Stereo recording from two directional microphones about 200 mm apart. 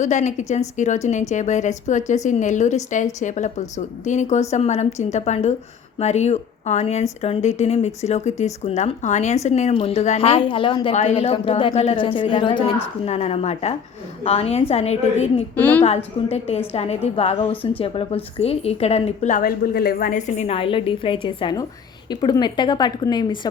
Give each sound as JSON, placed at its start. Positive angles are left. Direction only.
{"t": 0.0, "sound": "speech", "side_deg": 35}
{"t": 15.5, "sound": "a woman's voice", "side_deg": 10}
{"t": 16.7, "sound": "a woman's voice", "side_deg": 30}